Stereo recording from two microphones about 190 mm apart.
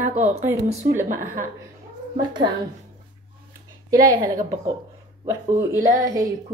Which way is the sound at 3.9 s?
20° right (ahead or behind).